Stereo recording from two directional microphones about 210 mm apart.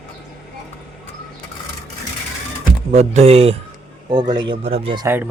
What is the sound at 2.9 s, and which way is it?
Speech, 30° right (ahead or behind).